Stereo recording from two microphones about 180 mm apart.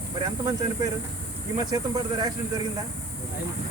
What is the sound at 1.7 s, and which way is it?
Speech, 20° right (ahead or behind).